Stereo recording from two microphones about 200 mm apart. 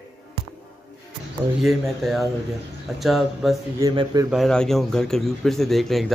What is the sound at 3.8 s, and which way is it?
Speech, 20° right (ahead or behind).